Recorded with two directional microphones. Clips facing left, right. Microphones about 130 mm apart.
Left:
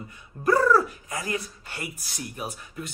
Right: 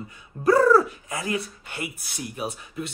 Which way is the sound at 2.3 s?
25° right (ahead or behind).